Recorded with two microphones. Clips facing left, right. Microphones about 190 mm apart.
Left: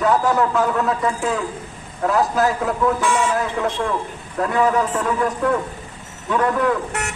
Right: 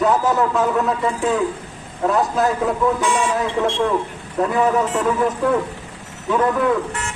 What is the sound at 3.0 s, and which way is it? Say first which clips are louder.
Speech: even; 20° right (ahead or behind).